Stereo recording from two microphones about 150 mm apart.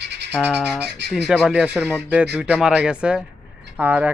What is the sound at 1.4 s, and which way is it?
Speech, 5° right (ahead or behind).